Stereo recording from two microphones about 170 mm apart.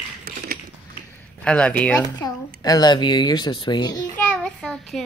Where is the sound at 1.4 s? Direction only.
5° left (ahead or behind).